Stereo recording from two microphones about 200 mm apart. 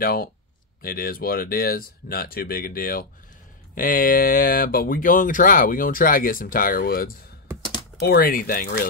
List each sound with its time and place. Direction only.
0.0 s speech: 45° left (ahead or behind)